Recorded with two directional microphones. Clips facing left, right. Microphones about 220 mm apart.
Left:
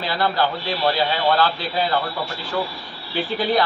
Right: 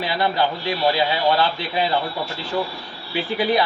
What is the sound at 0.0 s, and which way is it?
Speech, 15° right (ahead or behind).